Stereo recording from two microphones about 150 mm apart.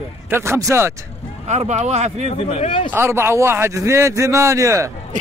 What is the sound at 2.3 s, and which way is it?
Speech, 35° left (ahead or behind).